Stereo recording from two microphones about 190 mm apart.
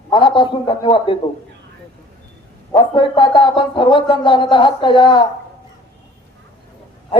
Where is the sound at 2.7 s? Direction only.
25° left (ahead or behind).